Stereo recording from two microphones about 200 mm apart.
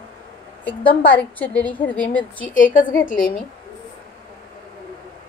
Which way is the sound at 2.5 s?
40° left (ahead or behind).